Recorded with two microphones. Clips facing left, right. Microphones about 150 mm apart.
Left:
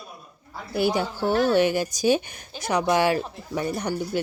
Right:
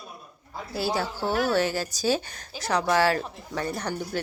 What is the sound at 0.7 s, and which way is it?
Speech, 20° left (ahead or behind).